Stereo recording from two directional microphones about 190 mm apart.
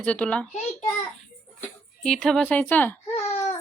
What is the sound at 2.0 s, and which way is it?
Speech, 5° left (ahead or behind).